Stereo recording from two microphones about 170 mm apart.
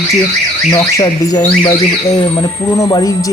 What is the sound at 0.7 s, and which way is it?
Speech, 20° left (ahead or behind).